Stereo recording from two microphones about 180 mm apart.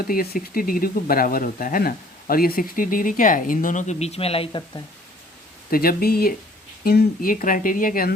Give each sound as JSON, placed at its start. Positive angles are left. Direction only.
{"t": 0.1, "sound": "speech", "side_deg": 55}
{"t": 5.7, "sound": "speech", "side_deg": 55}